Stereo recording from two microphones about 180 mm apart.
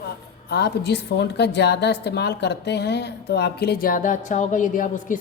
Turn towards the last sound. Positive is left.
turn(degrees=45)  # may be behind; listen again after turning